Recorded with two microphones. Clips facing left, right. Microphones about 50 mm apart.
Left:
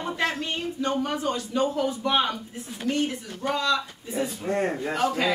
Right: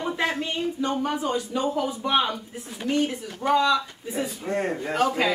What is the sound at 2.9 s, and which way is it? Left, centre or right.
Speech, right.